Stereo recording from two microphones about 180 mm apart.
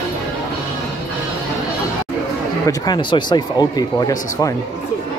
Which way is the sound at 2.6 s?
20° left (ahead or behind).